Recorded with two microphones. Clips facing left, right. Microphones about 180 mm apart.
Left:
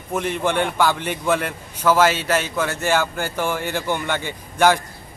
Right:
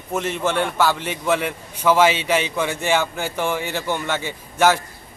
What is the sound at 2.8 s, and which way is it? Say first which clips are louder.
Speech: left 1 dB; 10° left (ahead or behind).